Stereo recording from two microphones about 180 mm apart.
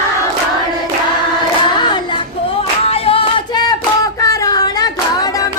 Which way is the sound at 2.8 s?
30° left (ahead or behind).